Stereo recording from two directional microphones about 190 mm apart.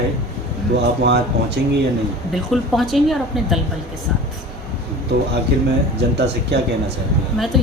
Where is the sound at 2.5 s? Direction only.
Centre (ahead or behind).